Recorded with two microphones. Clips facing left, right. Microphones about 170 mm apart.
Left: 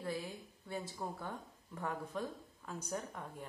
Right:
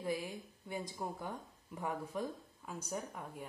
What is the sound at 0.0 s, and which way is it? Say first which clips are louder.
Speech: right 2 dB; 15° right (ahead or behind).